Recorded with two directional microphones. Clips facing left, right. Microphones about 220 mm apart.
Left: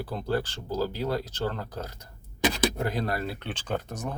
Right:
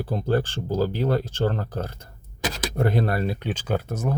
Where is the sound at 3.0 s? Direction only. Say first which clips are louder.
Right 5 dB; 25° right (ahead or behind).